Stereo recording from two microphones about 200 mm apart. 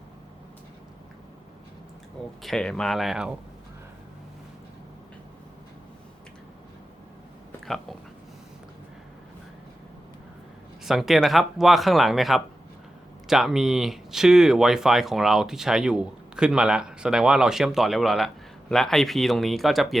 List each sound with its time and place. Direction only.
2.4 s speech: 5° left (ahead or behind)
7.6 s a sound: centre (ahead or behind)
10.8 s speech: centre (ahead or behind)